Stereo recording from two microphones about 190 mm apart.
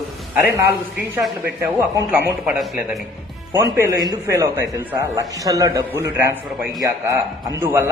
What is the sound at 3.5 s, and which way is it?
A man's voice, 15° right (ahead or behind).